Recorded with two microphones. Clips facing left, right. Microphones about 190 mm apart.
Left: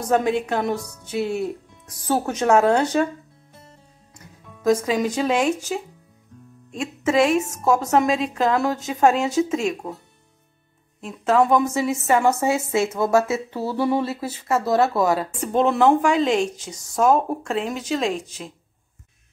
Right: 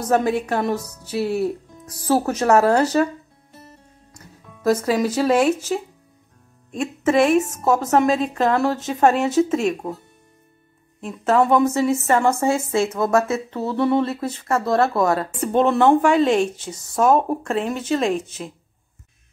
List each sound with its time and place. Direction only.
0.0 s speech: 5° right (ahead or behind)
4.6 s speech: 5° right (ahead or behind)
11.0 s speech: centre (ahead or behind)
12.4 s a woman's voice: 20° left (ahead or behind)
12.8 s a woman's voice: 10° left (ahead or behind)